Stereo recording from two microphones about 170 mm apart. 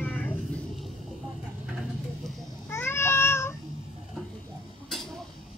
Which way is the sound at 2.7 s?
15° left (ahead or behind).